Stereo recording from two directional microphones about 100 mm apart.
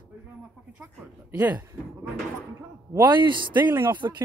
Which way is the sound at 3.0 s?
50° right (ahead or behind).